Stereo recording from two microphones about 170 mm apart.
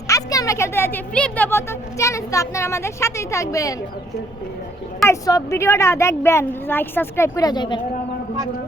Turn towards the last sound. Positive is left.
turn(degrees=25)  # may be behind; listen again after turning